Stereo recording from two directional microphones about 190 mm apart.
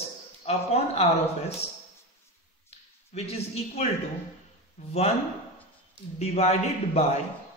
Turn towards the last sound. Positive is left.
turn(degrees=35)  # may be behind; listen again after turning